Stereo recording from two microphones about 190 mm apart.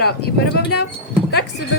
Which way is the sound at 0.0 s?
60° left (ahead or behind).